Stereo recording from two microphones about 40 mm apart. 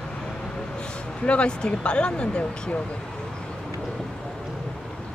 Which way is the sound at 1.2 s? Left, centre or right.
Left.